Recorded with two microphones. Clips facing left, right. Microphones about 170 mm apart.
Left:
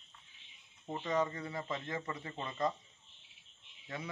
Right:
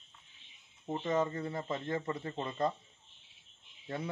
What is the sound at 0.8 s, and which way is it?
Speech, 25° right (ahead or behind).